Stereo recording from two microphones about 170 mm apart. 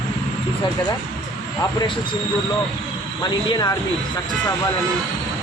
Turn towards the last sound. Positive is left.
turn(degrees=25)  # may be behind; listen again after turning